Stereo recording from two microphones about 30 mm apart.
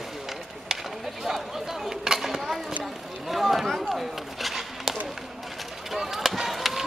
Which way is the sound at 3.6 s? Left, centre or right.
Centre.